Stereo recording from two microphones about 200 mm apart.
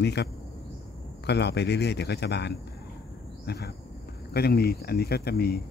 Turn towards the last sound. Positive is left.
turn(degrees=50)  # may be behind; listen again after turning